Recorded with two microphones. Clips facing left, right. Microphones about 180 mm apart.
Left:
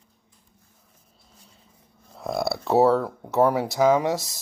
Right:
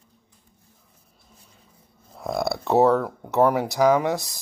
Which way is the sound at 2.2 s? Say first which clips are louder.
Right 1 dB; centre (ahead or behind).